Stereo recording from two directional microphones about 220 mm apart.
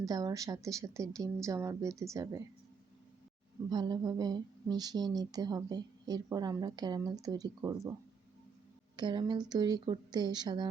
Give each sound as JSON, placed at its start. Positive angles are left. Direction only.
{"t": 0.0, "sound": "speech", "side_deg": -15}
{"t": 3.7, "sound": "speech", "side_deg": -20}
{"t": 9.0, "sound": "a woman's voice", "side_deg": -20}